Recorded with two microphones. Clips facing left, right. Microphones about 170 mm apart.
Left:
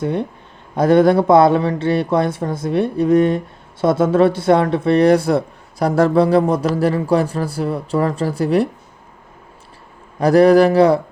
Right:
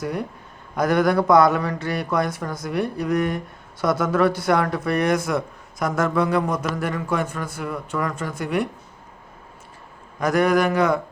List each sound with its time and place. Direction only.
0.0 s speech: 25° left (ahead or behind)
10.2 s speech: 35° left (ahead or behind)